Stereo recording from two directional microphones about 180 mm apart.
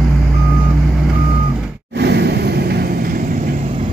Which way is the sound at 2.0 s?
65° right (ahead or behind).